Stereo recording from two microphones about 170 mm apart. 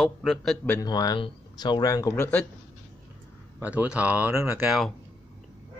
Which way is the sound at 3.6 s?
10° right (ahead or behind).